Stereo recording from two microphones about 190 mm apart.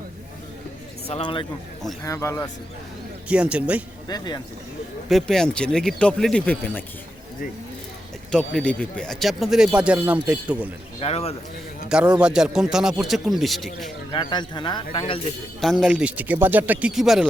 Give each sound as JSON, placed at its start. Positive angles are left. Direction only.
{"t": 1.0, "sound": "speech", "side_deg": 30}
{"t": 2.0, "sound": "a man's voice", "side_deg": 15}
{"t": 3.2, "sound": "speech", "side_deg": -5}
{"t": 5.0, "sound": "speech", "side_deg": 0}
{"t": 8.3, "sound": "speech", "side_deg": 5}
{"t": 11.0, "sound": "speech", "side_deg": 30}
{"t": 11.9, "sound": "speech", "side_deg": -5}
{"t": 14.1, "sound": "speech", "side_deg": 25}
{"t": 15.6, "sound": "speech", "side_deg": 0}